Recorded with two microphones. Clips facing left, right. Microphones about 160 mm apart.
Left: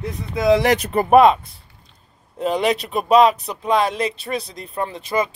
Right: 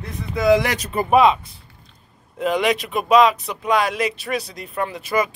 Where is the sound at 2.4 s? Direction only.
35° left (ahead or behind).